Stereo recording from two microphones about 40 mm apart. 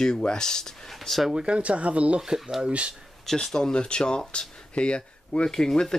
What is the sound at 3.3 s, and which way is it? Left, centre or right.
Speech, centre.